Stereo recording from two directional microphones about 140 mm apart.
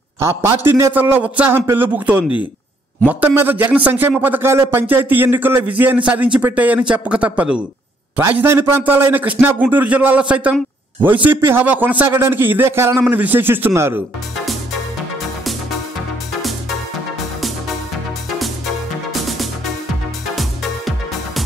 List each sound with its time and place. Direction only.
0.2 s a man's voice: 15° right (ahead or behind)